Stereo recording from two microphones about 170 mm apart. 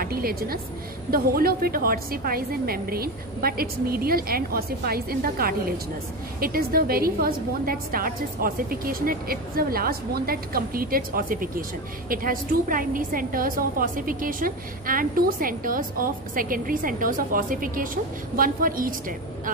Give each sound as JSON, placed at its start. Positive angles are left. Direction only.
{"t": 0.0, "sound": "a woman's voice", "side_deg": -60}